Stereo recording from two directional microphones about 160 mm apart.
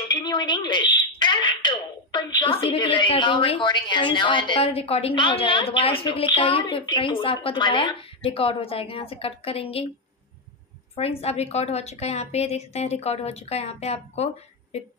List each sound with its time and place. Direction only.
0.1 s a woman's voice: 30° left (ahead or behind)
11.0 s a woman's voice: 40° left (ahead or behind)